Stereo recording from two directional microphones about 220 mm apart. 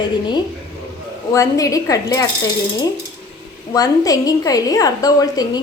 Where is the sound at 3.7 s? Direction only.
15° left (ahead or behind).